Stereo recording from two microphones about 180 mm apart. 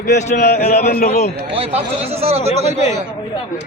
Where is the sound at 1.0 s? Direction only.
40° left (ahead or behind).